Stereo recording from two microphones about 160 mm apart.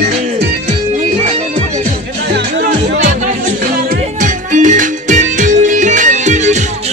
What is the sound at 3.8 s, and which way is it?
Music, 55° right (ahead or behind).